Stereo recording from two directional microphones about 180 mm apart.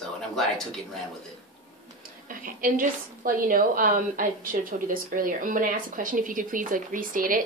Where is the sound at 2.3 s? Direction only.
50° right (ahead or behind).